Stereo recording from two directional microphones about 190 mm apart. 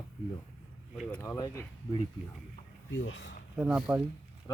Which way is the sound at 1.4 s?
20° left (ahead or behind).